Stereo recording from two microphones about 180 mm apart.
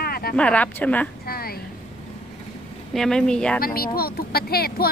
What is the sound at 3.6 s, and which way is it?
Speech, 55° left (ahead or behind).